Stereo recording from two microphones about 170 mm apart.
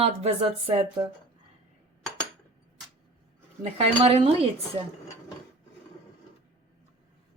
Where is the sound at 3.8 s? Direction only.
35° right (ahead or behind).